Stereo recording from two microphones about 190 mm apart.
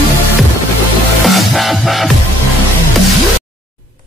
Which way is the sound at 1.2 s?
Centre (ahead or behind).